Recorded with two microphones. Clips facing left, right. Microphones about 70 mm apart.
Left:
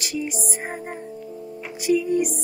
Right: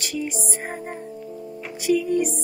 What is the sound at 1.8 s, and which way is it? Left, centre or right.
Music, centre.